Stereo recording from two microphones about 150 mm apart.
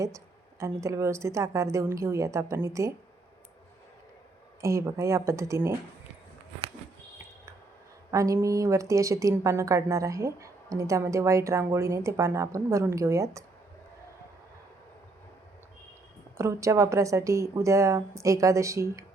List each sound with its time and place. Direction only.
0.6 s a woman's voice: 20° right (ahead or behind)
4.6 s a woman's voice: 20° right (ahead or behind)
8.1 s a woman's voice: 20° right (ahead or behind)
16.4 s a woman's voice: 20° right (ahead or behind)